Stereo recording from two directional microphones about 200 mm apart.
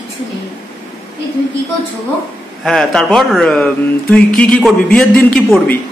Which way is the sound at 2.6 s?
5° left (ahead or behind).